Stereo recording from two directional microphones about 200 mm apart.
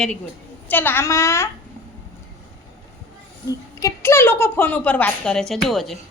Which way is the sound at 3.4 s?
15° left (ahead or behind).